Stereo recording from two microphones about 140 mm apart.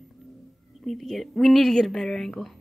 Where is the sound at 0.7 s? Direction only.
Centre (ahead or behind).